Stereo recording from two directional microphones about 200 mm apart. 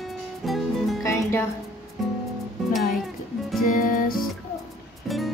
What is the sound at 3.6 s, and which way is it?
Music, 45° left (ahead or behind).